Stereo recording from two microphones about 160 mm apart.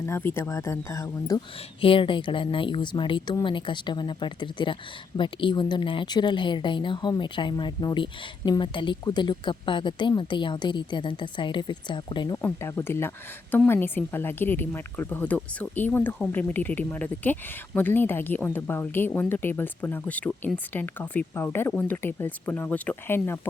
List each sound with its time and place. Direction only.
0.0 s speech: 15° left (ahead or behind)
1.8 s speech: 35° left (ahead or behind)
12.4 s speech: 15° left (ahead or behind)